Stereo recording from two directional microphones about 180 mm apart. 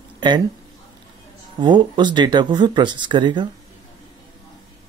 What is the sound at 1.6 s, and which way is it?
Speech, 25° right (ahead or behind).